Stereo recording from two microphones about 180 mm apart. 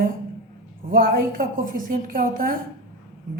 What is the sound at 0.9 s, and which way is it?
Speech, 50° right (ahead or behind).